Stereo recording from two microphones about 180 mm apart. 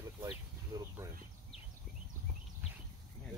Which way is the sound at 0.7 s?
20° right (ahead or behind).